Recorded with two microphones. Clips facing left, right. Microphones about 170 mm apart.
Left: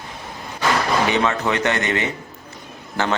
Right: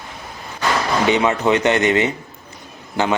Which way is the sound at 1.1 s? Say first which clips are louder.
Right 4 dB; 20° right (ahead or behind).